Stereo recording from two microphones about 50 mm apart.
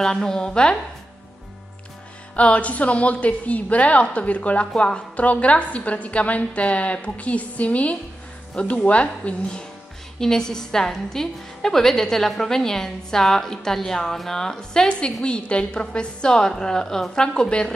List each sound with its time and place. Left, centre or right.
0.0 s a woman's voice: centre
2.3 s a woman's voice: left